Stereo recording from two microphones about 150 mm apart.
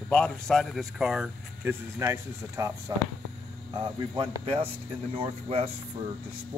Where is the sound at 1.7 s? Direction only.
20° right (ahead or behind); by 5.6 s 40° right (ahead or behind).